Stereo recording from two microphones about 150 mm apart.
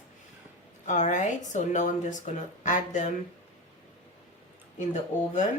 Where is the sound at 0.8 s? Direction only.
55° left (ahead or behind).